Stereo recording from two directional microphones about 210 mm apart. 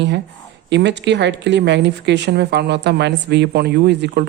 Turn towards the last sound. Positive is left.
turn(degrees=-55)  # may be behind; listen again after turning